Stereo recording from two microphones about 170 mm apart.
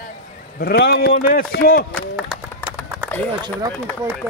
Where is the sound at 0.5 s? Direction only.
75° left (ahead or behind); by 1.8 s 60° left (ahead or behind).